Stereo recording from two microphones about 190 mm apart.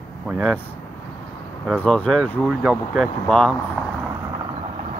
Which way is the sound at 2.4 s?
5° right (ahead or behind).